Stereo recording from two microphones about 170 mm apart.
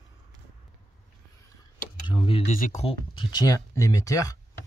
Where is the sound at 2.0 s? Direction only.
30° left (ahead or behind).